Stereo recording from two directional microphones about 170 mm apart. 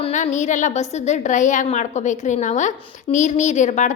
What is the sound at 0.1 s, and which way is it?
A woman's voice, 45° left (ahead or behind).